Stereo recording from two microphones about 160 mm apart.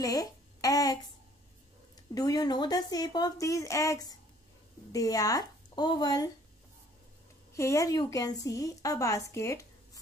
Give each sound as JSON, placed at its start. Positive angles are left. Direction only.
{"t": 0.0, "sound": "a sound", "side_deg": 20}
{"t": 2.1, "sound": "a woman's voice", "side_deg": 25}
{"t": 7.5, "sound": "a woman's voice", "side_deg": 20}